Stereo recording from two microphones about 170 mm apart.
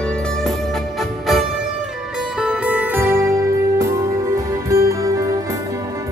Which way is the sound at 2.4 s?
5° right (ahead or behind).